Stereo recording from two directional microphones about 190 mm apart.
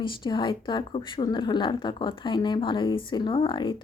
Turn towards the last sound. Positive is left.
turn(degrees=25)  # may be behind; listen again after turning